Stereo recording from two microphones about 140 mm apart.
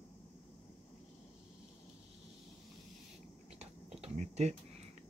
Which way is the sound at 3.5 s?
50° right (ahead or behind).